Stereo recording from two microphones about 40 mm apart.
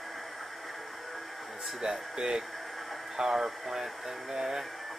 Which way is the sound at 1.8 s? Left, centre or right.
Centre.